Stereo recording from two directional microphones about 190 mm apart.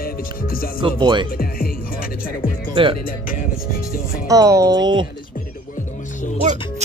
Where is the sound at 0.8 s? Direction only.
25° right (ahead or behind).